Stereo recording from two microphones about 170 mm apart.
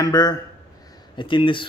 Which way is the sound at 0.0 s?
25° left (ahead or behind).